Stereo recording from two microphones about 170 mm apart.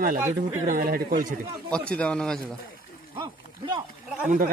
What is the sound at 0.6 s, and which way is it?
Speech, 55° right (ahead or behind).